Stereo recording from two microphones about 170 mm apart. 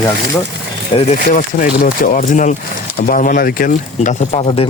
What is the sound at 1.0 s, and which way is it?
Speech, 45° left (ahead or behind).